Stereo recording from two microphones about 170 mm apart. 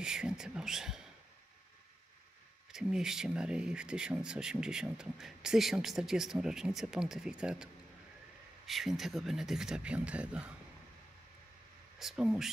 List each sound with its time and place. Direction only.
0.0 s speech: 5° right (ahead or behind)
2.7 s speech: 5° right (ahead or behind)
12.0 s speech: centre (ahead or behind)